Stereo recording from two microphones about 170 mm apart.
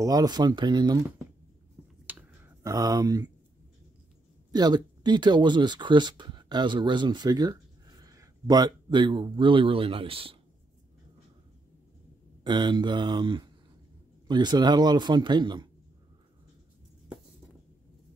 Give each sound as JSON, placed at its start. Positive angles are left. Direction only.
{"t": 0.0, "sound": "speech", "side_deg": -20}
{"t": 2.1, "sound": "clicking", "side_deg": -10}
{"t": 2.6, "sound": "speech", "side_deg": -20}
{"t": 4.5, "sound": "speech", "side_deg": -25}
{"t": 12.4, "sound": "speech", "side_deg": -25}